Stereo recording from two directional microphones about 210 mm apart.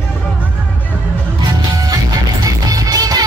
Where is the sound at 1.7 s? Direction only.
15° right (ahead or behind).